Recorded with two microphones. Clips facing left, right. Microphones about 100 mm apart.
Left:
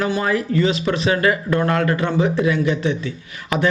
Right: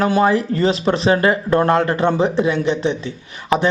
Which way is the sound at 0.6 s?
35° right (ahead or behind).